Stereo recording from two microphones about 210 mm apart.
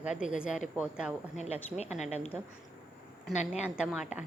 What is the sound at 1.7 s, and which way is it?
Speech, 30° left (ahead or behind).